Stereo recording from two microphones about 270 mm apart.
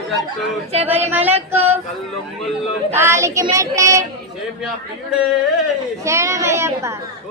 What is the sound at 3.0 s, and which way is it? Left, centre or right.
A woman's voice, centre.